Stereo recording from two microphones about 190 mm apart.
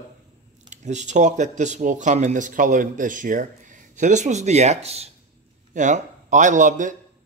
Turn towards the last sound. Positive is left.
turn(degrees=-40)  # may be behind; listen again after turning